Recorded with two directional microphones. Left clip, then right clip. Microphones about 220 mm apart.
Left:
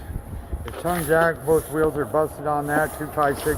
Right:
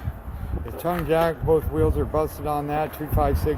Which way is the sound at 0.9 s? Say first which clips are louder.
Left 2 dB; 10° right (ahead or behind).